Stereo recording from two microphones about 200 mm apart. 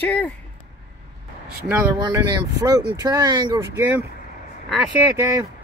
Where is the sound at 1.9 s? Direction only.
20° right (ahead or behind).